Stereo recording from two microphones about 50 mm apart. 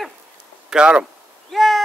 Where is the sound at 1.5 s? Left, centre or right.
Centre.